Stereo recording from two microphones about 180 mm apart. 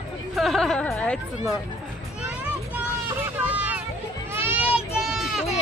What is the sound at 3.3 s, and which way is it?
Hubbub, 10° right (ahead or behind).